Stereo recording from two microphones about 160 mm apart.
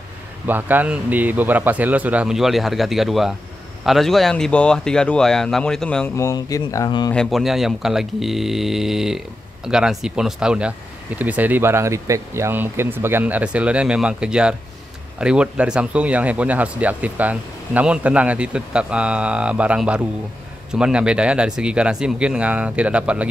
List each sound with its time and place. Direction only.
0.5 s speech: 10° right (ahead or behind); by 6.1 s 5° left (ahead or behind)
6.1 s speech: 20° left (ahead or behind)
7.1 s speech: centre (ahead or behind)